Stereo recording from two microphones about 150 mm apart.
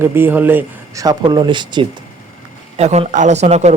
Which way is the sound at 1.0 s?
30° right (ahead or behind).